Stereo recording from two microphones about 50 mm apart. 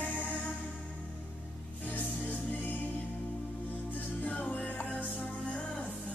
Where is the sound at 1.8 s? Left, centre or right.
Left.